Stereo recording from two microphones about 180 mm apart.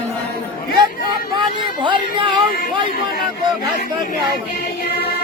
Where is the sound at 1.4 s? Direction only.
25° right (ahead or behind).